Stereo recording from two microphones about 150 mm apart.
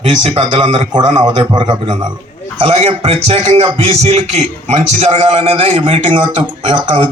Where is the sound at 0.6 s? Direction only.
35° right (ahead or behind).